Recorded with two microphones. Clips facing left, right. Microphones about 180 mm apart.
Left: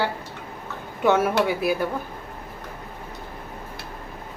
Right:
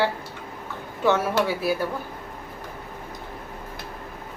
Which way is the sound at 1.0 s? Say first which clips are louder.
Left 2 dB; 20° left (ahead or behind).